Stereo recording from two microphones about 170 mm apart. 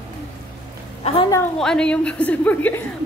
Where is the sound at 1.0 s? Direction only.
35° left (ahead or behind).